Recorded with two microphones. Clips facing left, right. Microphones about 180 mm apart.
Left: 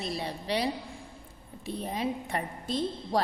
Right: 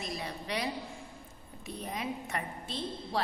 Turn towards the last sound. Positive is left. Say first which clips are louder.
# left 7 dB
turn(degrees=35)  # may be behind; listen again after turning